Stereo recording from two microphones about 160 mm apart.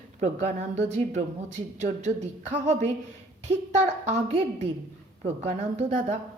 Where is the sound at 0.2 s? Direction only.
45° right (ahead or behind).